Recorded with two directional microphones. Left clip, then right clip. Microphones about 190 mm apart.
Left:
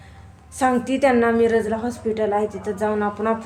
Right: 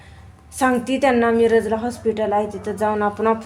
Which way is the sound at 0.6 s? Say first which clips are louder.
Right 1 dB; 25° right (ahead or behind).